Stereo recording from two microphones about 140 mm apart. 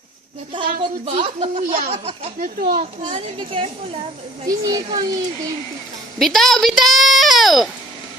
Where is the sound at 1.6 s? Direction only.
80° right.